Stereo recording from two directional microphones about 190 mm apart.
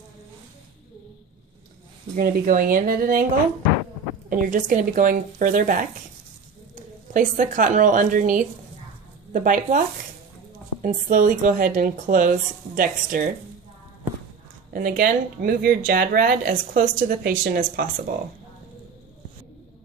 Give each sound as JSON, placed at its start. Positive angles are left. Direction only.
{"t": 2.1, "sound": "speech", "side_deg": -45}
{"t": 4.3, "sound": "speech", "side_deg": -45}
{"t": 10.8, "sound": "speech", "side_deg": -45}
{"t": 14.7, "sound": "speech", "side_deg": -50}